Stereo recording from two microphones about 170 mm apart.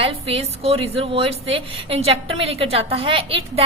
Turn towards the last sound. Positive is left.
turn(degrees=-35)  # may be behind; listen again after turning